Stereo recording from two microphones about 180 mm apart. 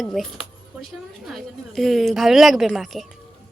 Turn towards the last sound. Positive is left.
turn(degrees=0)  # may be behind; listen again after turning